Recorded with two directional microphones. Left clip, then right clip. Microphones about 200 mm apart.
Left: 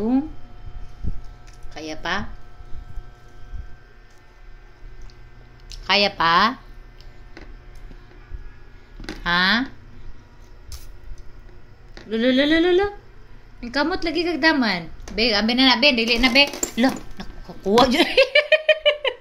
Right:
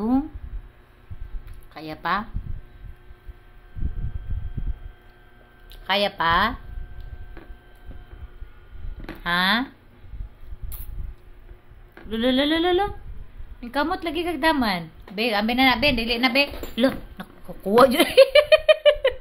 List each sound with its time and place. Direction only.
1.7 s a woman's voice: 25° right (ahead or behind)
5.9 s speech: centre (ahead or behind)
9.2 s humming: 10° right (ahead or behind)
11.9 s humming: 15° right (ahead or behind)
13.6 s a woman's voice: 15° right (ahead or behind)